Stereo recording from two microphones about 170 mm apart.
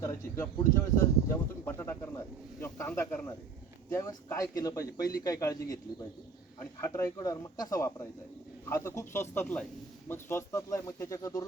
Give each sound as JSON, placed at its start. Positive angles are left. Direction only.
{"t": 0.0, "sound": "speech", "side_deg": 15}
{"t": 6.9, "sound": "speech", "side_deg": 20}